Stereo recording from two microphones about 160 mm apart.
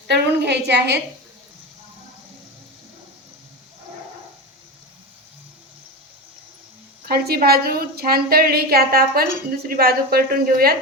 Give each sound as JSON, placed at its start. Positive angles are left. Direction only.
{"t": 0.1, "sound": "a woman's voice", "side_deg": -90}
{"t": 7.0, "sound": "a woman's voice", "side_deg": -75}